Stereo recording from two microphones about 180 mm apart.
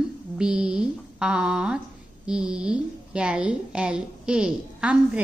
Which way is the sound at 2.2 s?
5° right (ahead or behind).